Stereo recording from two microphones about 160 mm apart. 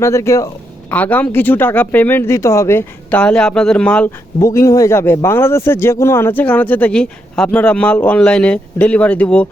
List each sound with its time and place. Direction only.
0.0 s a man's voice: 20° left (ahead or behind)
4.4 s a man's voice: 20° left (ahead or behind)